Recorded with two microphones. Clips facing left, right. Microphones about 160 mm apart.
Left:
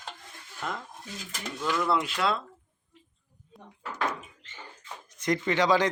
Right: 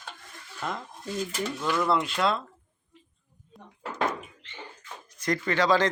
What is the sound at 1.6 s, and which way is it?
Speech, 10° right (ahead or behind).